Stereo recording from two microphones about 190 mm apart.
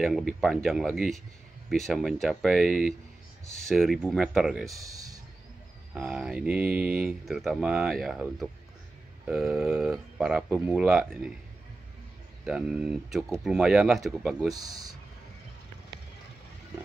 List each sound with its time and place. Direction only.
0.0 s speech: centre (ahead or behind)
4.7 s a sound: 20° right (ahead or behind)
5.9 s speech: 5° right (ahead or behind)
12.4 s speech: 5° right (ahead or behind)
14.5 s speech: 20° right (ahead or behind)